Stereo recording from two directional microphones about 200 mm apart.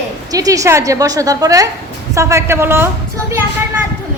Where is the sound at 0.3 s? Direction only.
15° right (ahead or behind).